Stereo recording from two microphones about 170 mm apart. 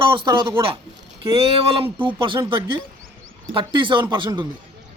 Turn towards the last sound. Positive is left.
turn(degrees=-25)  # may be behind; listen again after turning